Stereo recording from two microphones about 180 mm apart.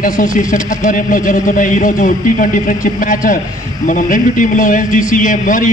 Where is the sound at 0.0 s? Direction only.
50° left (ahead or behind).